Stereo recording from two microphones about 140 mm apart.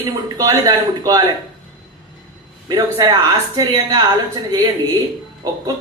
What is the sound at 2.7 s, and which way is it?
A man's voice, 25° right (ahead or behind).